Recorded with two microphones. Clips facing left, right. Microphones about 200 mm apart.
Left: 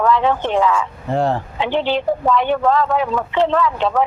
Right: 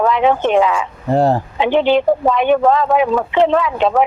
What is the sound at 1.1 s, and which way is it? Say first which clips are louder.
Speech: right 5 dB; 35° right (ahead or behind).